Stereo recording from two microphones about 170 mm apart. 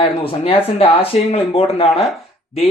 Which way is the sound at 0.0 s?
35° left (ahead or behind).